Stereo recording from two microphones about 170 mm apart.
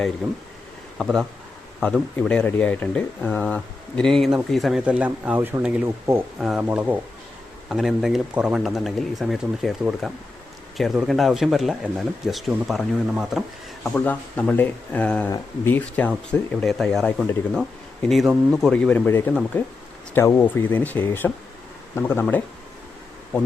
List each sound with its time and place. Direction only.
0.2 s speech: centre (ahead or behind)